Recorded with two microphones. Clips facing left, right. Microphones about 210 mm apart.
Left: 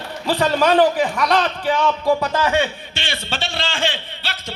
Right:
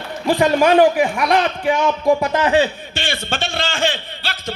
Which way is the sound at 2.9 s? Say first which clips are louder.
Right 4 dB; 50° right (ahead or behind).